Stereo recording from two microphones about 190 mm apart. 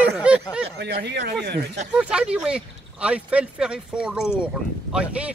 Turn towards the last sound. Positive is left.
turn(degrees=-5)  # may be behind; listen again after turning